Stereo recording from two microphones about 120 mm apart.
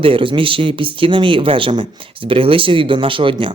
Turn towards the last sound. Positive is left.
turn(degrees=-45)  # may be behind; listen again after turning